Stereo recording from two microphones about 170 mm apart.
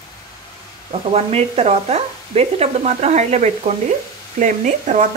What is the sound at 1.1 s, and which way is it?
Speech, 40° right (ahead or behind).